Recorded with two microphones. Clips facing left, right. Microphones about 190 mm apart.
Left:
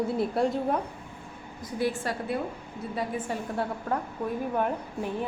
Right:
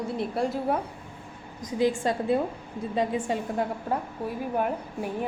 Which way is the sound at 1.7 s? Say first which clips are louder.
Right 4 dB; 20° right (ahead or behind).